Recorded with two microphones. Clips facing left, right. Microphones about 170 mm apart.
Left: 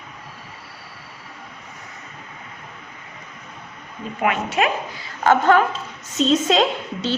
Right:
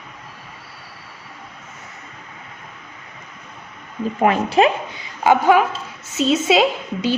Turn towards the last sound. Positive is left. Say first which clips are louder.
# right 3 dB
turn(degrees=-10)  # may be behind; listen again after turning